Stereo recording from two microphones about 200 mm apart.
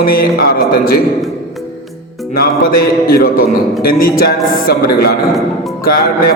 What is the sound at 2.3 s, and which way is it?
A man's voice, 50° left (ahead or behind).